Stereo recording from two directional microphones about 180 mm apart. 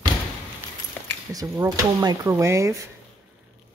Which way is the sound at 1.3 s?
20° right (ahead or behind).